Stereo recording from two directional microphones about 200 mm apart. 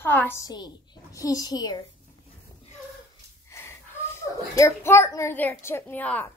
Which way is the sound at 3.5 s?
15° left (ahead or behind).